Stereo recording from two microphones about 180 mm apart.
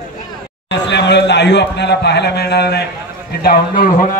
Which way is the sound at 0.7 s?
75° left (ahead or behind).